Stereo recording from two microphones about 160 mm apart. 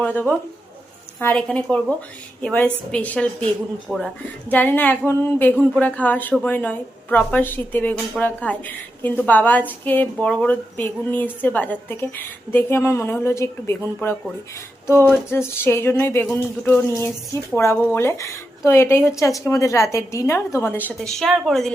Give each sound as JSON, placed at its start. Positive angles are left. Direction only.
{"t": 0.0, "sound": "a woman's voice", "side_deg": 10}
{"t": 4.5, "sound": "a woman's voice", "side_deg": 10}